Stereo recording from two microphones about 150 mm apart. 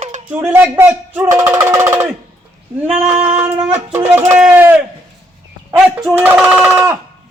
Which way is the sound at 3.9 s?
15° right (ahead or behind).